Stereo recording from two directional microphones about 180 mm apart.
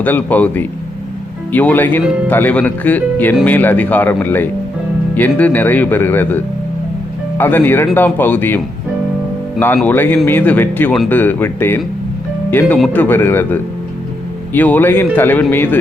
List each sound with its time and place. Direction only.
0.0 s speech: 10° left (ahead or behind)